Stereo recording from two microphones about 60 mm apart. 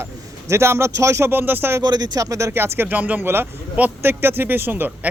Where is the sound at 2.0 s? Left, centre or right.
Right.